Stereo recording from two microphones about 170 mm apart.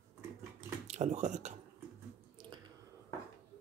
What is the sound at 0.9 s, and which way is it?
Speech, 40° right (ahead or behind).